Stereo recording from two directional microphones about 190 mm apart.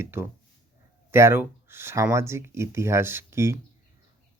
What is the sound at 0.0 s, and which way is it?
Speech, 10° right (ahead or behind).